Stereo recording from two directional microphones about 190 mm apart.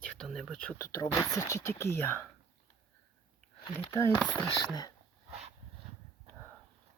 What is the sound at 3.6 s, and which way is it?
Speech, 15° left (ahead or behind).